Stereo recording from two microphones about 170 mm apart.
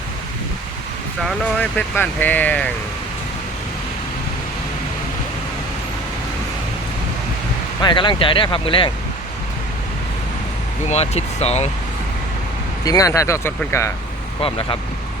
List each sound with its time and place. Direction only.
1.5 s speech: 5° left (ahead or behind)
7.8 s speech: 25° left (ahead or behind)
10.8 s speech: 40° left (ahead or behind)
12.8 s speech: 20° left (ahead or behind)